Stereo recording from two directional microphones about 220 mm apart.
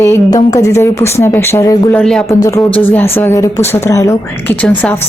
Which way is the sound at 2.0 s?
Centre (ahead or behind).